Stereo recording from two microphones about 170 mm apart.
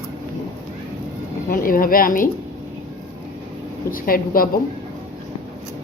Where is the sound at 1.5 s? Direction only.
55° left (ahead or behind).